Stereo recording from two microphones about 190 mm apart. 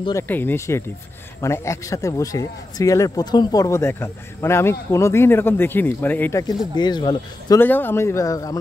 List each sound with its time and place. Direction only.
0.3 s speech: 10° left (ahead or behind)
6.8 s speech: 25° left (ahead or behind)